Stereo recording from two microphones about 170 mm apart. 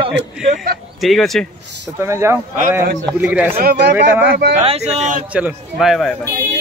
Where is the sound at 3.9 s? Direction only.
10° right (ahead or behind).